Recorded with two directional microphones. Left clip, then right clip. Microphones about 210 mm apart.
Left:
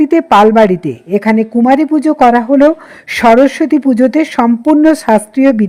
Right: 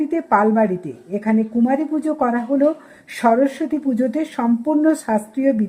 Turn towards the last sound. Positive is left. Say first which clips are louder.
# left 9 dB
turn(degrees=35)  # may be behind; listen again after turning